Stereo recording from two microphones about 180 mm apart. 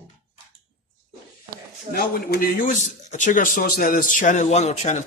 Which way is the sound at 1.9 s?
55° left (ahead or behind).